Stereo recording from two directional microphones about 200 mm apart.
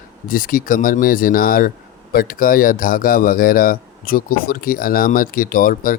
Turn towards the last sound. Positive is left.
turn(degrees=45)  # may be behind; listen again after turning